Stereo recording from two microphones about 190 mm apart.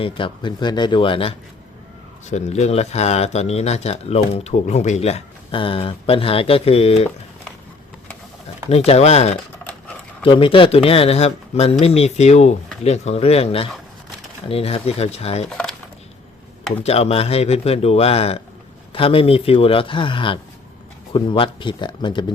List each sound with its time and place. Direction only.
0.0 s speech: 25° left (ahead or behind)
2.3 s speech: 35° left (ahead or behind)
8.7 s speech: 35° left (ahead or behind)
15.4 s speech: 5° left (ahead or behind)
16.8 s speech: 30° left (ahead or behind)